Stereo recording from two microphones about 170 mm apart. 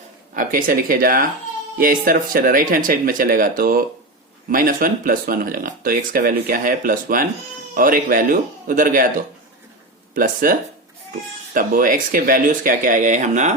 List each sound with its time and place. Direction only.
0.3 s speech: 55° right (ahead or behind)
10.2 s speech: 55° right (ahead or behind)